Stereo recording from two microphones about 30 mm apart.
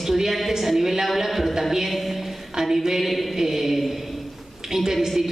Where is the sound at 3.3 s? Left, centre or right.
Centre.